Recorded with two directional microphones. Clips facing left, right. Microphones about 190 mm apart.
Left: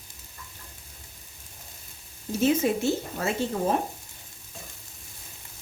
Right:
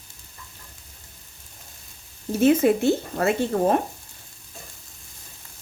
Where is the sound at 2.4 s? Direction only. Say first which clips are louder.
Right 5 dB; 60° right (ahead or behind).